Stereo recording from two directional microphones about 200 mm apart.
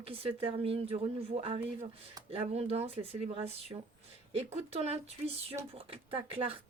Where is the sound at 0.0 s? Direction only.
30° right (ahead or behind).